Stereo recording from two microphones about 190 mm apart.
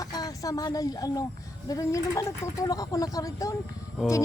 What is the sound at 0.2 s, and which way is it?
Speech, 20° left (ahead or behind).